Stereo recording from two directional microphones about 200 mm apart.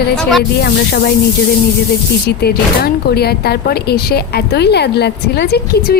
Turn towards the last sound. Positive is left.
turn(degrees=55)  # may be behind; listen again after turning